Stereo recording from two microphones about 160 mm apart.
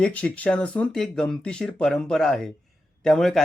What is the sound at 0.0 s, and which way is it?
A man's voice, 10° left (ahead or behind).